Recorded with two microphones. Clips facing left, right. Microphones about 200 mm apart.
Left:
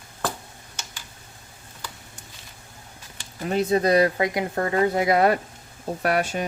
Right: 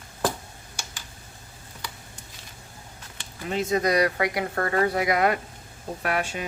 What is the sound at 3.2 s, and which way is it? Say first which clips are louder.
Speech: left 4 dB; 40° left (ahead or behind).